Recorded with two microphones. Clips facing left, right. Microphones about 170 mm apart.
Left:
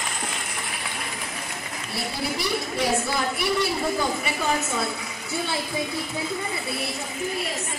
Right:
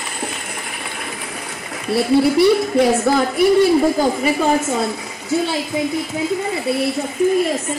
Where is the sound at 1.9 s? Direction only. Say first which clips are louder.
Right 16 dB; 60° right (ahead or behind).